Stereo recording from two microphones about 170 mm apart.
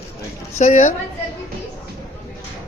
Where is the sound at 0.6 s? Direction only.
45° left (ahead or behind).